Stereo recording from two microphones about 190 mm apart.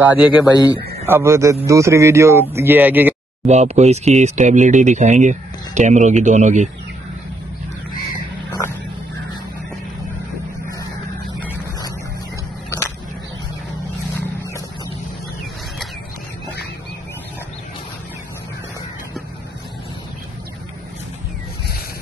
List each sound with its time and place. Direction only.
0.0 s speech: 5° right (ahead or behind)
3.4 s speech: 35° right (ahead or behind)
12.6 s a sound: 15° left (ahead or behind)